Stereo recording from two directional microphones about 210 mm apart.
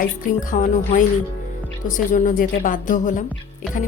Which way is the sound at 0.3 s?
40° left (ahead or behind).